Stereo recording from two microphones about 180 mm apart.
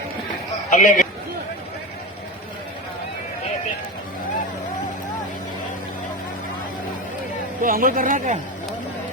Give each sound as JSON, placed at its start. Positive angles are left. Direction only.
{"t": 0.7, "sound": "a man's voice", "side_deg": 45}
{"t": 7.6, "sound": "speech", "side_deg": -50}